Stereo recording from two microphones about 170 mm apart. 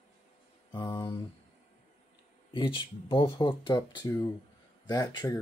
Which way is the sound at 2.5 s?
30° left (ahead or behind).